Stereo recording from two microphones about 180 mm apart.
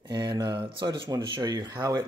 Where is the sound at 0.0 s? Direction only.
25° right (ahead or behind).